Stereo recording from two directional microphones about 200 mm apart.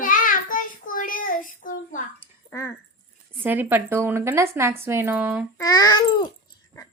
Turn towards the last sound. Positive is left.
turn(degrees=20)  # may be behind; listen again after turning